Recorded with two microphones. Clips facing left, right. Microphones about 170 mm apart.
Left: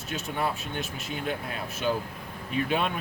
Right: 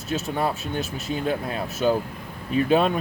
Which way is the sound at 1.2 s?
40° right (ahead or behind).